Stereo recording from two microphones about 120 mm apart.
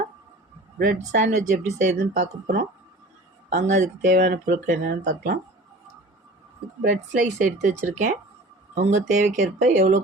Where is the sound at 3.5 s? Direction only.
90° right.